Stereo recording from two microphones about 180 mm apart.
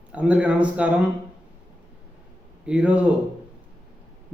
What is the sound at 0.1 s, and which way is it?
Speech, 5° right (ahead or behind).